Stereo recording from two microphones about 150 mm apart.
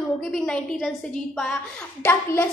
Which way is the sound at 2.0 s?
15° left (ahead or behind).